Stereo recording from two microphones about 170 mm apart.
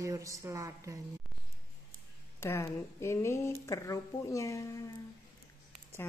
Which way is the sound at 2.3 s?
15° left (ahead or behind).